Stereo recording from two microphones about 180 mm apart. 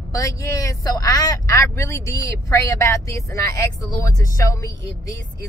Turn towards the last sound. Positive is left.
turn(degrees=15)  # may be behind; listen again after turning